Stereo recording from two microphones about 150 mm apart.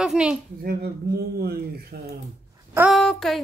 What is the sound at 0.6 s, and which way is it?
Speech, 90° right.